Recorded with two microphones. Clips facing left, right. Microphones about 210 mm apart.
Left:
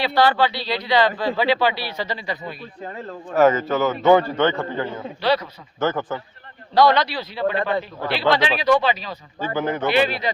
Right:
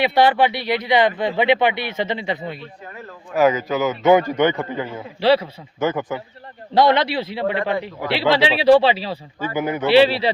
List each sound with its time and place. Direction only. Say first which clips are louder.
0.0 s speech: right 2 dB; 20° right (ahead or behind)
3.3 s a man's voice: left 1 dB; 10° right (ahead or behind)
5.2 s speech: right 5 dB; 30° right (ahead or behind)
5.8 s a man's voice: right 1 dB; 10° right (ahead or behind)
6.7 s speech: right 1 dB; 25° right (ahead or behind)
9.6 s a man's voice: right 1 dB; 10° right (ahead or behind)
9.8 s a man's voice: right 8 dB; 30° right (ahead or behind)